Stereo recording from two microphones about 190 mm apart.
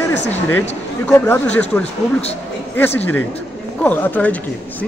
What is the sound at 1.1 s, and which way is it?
Speech, 10° left (ahead or behind).